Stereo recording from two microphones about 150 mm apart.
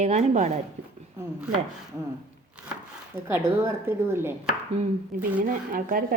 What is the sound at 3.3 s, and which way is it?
A woman's voice, 15° right (ahead or behind).